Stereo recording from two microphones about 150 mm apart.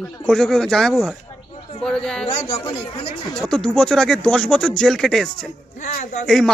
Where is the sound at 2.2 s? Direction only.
45° left (ahead or behind).